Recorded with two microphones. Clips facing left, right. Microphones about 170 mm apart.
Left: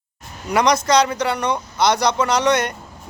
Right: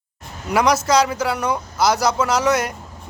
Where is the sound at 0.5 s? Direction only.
5° right (ahead or behind).